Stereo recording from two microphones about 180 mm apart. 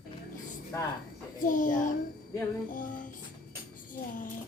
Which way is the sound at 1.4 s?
45° left (ahead or behind).